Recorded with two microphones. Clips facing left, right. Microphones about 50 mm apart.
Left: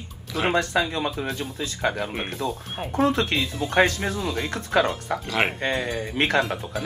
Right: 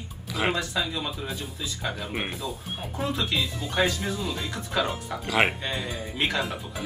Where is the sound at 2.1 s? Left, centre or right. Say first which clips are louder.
Left 2 dB; centre.